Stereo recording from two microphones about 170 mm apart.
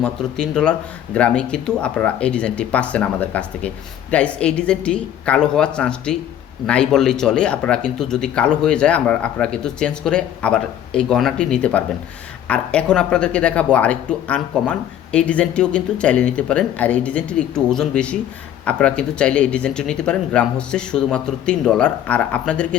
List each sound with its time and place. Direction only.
0.0 s speech: 5° left (ahead or behind)